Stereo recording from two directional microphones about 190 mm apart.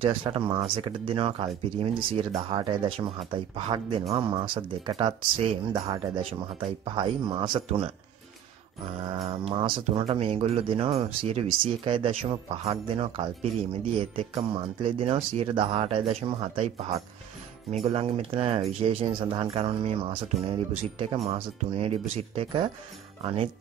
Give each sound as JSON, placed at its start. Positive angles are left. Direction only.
{"t": 0.0, "sound": "speech", "side_deg": -25}
{"t": 9.0, "sound": "speech", "side_deg": -30}